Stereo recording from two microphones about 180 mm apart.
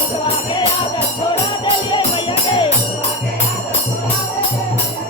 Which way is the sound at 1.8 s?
25° left (ahead or behind).